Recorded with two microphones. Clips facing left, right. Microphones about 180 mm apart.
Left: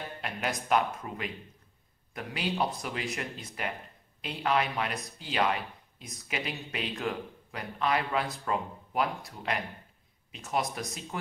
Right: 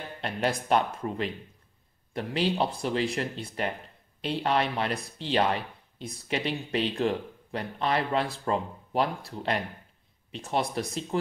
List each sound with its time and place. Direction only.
0.2 s speech: 30° right (ahead or behind)